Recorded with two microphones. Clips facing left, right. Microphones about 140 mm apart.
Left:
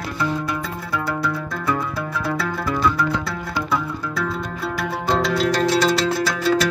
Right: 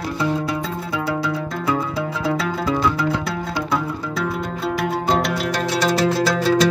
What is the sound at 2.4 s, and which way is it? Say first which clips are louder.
Music: right 1 dB; 20° right (ahead or behind).